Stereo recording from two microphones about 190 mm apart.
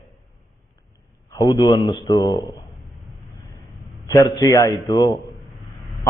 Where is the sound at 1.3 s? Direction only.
20° left (ahead or behind).